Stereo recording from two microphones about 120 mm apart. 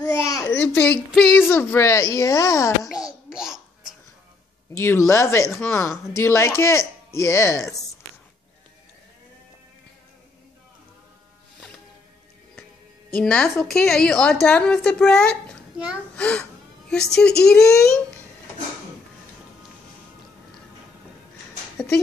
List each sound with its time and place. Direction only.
0.0 s babbling: 25° left (ahead or behind)
1.1 s a woman's voice: 5° left (ahead or behind)
1.4 s speech: 20° left (ahead or behind)
2.9 s babbling: 5° right (ahead or behind)
4.7 s speech: 25° left (ahead or behind)
13.1 s a woman's voice: 10° left (ahead or behind)